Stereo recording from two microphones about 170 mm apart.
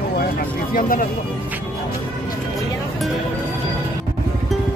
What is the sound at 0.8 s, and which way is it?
Speech, 55° left (ahead or behind).